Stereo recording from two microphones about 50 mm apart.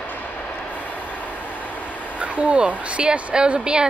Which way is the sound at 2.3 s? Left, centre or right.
Right.